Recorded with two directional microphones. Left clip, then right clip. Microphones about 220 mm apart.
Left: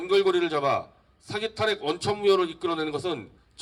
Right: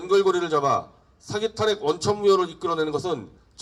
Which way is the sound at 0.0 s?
30° left (ahead or behind).